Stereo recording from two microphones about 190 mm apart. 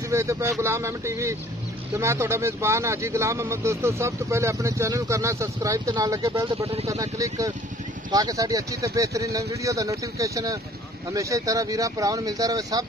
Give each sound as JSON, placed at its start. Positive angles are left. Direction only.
{"t": 0.1, "sound": "speech", "side_deg": -15}